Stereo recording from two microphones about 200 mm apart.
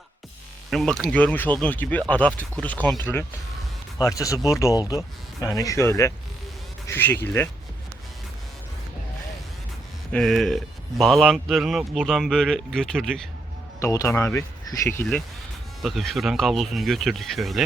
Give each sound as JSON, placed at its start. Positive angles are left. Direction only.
{"t": 0.7, "sound": "speech", "side_deg": 0}
{"t": 10.1, "sound": "speech", "side_deg": 5}
{"t": 13.7, "sound": "speech", "side_deg": 15}
{"t": 15.8, "sound": "speech", "side_deg": 0}